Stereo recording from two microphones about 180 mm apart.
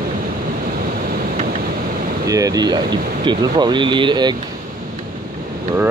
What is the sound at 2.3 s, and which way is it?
Speech, 20° right (ahead or behind).